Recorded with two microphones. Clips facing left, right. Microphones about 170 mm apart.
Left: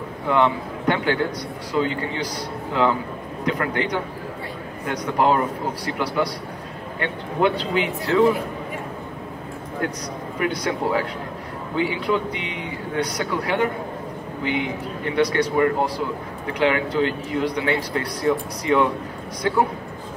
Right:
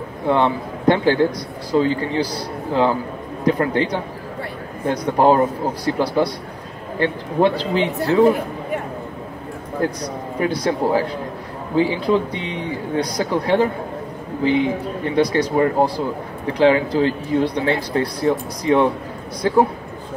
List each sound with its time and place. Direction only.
0.3 s speech: 30° right (ahead or behind)
10.4 s speech: 30° right (ahead or behind)